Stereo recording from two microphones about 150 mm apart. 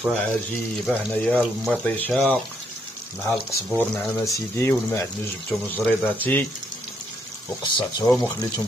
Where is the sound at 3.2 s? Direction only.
15° left (ahead or behind).